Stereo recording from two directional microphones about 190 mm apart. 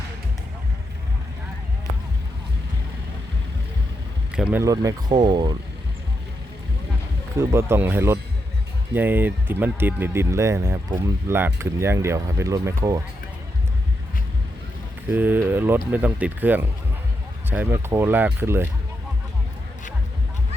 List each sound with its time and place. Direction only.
4.3 s speech: 5° right (ahead or behind)
4.6 s speech: 15° right (ahead or behind)
7.3 s speech: 15° right (ahead or behind)
15.1 s speech: 10° right (ahead or behind)